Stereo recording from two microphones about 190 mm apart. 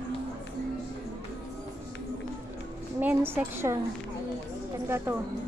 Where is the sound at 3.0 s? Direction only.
10° right (ahead or behind).